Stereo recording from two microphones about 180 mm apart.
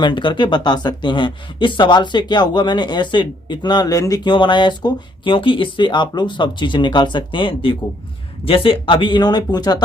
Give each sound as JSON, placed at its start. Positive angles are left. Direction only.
{"t": 0.0, "sound": "speech", "side_deg": 25}